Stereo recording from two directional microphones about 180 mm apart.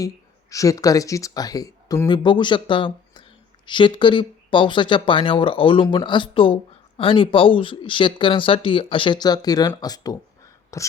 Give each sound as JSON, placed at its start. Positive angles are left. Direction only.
{"t": 0.5, "sound": "speech", "side_deg": 20}